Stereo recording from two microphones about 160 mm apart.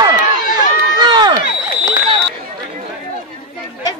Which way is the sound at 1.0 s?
30° right (ahead or behind).